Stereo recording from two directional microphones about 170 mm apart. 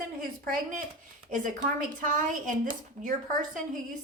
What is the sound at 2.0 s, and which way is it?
Speech, 50° right (ahead or behind).